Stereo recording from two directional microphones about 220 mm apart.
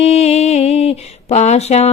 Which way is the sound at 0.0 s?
30° left (ahead or behind).